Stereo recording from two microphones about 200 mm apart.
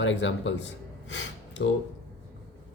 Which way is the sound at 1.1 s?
65° left (ahead or behind).